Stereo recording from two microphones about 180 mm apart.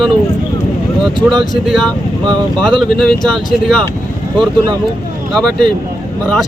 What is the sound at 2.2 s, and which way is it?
Speech, 25° right (ahead or behind).